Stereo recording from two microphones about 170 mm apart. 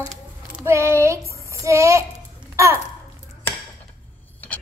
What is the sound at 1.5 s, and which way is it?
Speech, 15° right (ahead or behind).